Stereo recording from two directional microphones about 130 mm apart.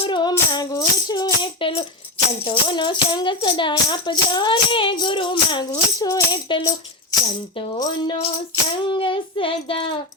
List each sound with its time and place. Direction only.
0.0 s music: 35° left (ahead or behind)
6.5 s speech: 30° left (ahead or behind)
7.8 s music: 35° left (ahead or behind)
8.8 s child singing: 40° left (ahead or behind)